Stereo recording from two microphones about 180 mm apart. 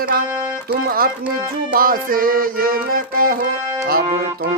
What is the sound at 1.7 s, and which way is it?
Music, 50° right (ahead or behind).